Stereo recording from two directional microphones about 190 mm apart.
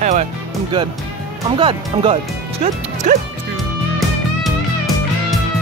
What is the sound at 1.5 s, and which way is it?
Speech, 30° right (ahead or behind).